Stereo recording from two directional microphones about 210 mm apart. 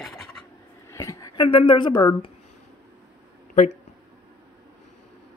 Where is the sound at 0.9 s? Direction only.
15° left (ahead or behind).